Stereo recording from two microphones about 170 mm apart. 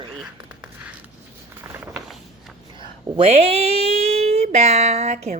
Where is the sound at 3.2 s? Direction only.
35° right (ahead or behind).